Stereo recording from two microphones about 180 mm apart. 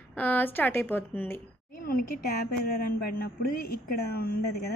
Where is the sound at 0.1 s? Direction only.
10° left (ahead or behind).